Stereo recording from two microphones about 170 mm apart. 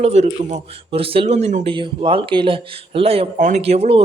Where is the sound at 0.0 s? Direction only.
40° right (ahead or behind).